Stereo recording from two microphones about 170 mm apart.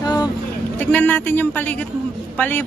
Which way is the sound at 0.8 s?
10° left (ahead or behind).